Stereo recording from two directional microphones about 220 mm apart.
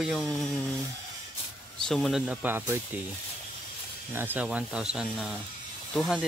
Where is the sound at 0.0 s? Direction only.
Centre (ahead or behind).